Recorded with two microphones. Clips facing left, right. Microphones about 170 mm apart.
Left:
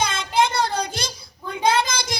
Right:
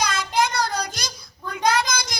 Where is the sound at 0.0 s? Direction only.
25° left (ahead or behind).